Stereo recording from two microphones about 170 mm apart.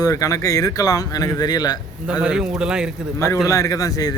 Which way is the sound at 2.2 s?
5° right (ahead or behind).